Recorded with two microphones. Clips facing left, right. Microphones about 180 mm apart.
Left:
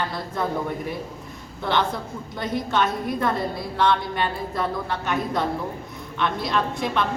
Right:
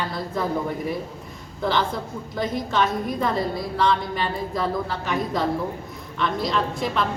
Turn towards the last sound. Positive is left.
turn(degrees=0)  # may be behind; listen again after turning